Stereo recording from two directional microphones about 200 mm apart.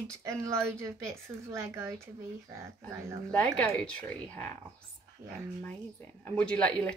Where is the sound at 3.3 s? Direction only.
10° left (ahead or behind).